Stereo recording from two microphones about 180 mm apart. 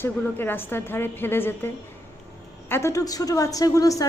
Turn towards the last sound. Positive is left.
turn(degrees=20)  # may be behind; listen again after turning